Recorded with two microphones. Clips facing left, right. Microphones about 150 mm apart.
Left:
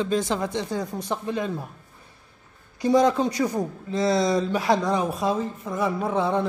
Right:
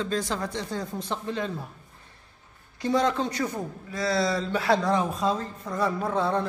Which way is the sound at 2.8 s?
15° left (ahead or behind).